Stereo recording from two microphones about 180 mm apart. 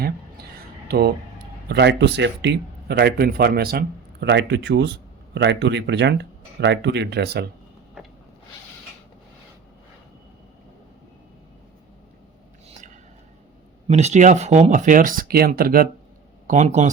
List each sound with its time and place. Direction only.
0.9 s speech: 60° right (ahead or behind)
1.7 s speech: 75° right (ahead or behind)
13.8 s speech: 40° right (ahead or behind)
16.5 s speech: 40° right (ahead or behind)